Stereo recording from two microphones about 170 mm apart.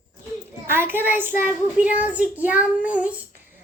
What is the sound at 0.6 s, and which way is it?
A child's voice, 15° right (ahead or behind).